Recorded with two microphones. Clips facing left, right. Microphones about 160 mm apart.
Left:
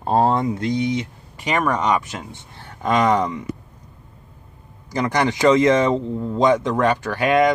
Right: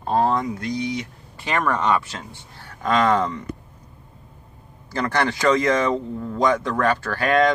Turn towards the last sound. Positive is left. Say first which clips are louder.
# left 2 dB
turn(degrees=15)  # may be behind; listen again after turning